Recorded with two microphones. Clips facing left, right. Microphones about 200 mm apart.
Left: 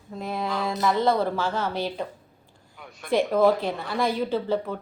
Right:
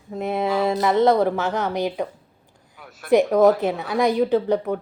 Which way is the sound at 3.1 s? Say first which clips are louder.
Right 5 dB; 20° right (ahead or behind).